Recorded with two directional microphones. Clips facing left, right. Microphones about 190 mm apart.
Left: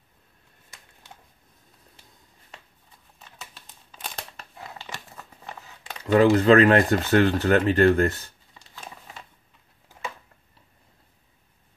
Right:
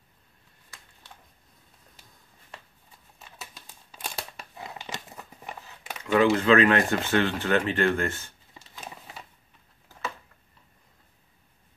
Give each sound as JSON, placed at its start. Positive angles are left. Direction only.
{"t": 3.6, "sound": "crumpling", "side_deg": -10}
{"t": 6.0, "sound": "speech", "side_deg": 40}